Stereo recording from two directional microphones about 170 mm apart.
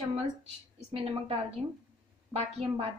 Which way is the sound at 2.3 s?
35° right (ahead or behind).